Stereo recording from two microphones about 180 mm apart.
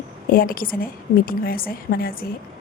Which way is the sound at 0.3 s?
55° left (ahead or behind).